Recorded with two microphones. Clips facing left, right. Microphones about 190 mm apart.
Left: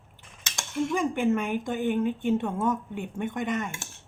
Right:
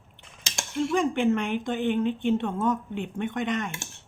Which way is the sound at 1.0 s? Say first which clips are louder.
Right 2 dB; 5° left (ahead or behind).